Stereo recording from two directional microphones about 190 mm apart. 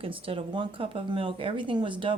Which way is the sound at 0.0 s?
30° right (ahead or behind).